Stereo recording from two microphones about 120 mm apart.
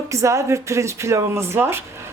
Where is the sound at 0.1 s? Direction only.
25° right (ahead or behind).